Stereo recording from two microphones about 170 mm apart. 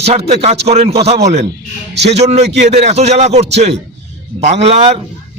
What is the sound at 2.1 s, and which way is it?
A man's voice, 40° right (ahead or behind).